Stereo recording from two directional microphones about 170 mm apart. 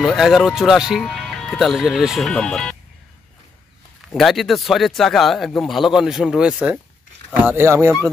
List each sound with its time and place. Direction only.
0.0 s speech: centre (ahead or behind)
4.1 s speech: centre (ahead or behind); by 7.9 s 15° right (ahead or behind)